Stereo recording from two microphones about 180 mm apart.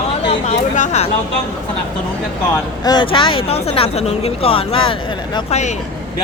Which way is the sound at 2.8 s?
25° left (ahead or behind).